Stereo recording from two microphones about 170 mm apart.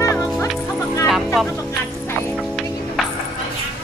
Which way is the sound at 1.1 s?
Centre (ahead or behind).